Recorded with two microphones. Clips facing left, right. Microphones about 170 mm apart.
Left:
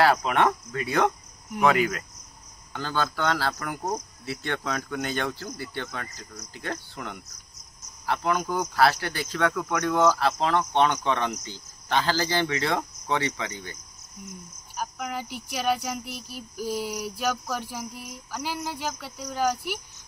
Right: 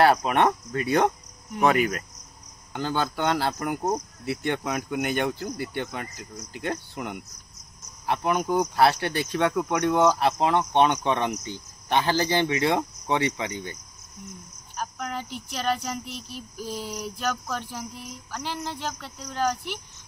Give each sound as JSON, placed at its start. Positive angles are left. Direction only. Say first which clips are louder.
{"t": 0.0, "sound": "speech", "louder": "right 2 dB", "side_deg": -20}
{"t": 14.8, "sound": "speech", "louder": "even", "side_deg": 5}